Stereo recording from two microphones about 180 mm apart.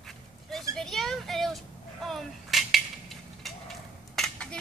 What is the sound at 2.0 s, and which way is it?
Cap gun, centre (ahead or behind).